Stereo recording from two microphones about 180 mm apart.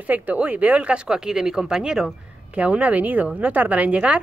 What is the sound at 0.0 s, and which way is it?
A woman's voice, 10° right (ahead or behind).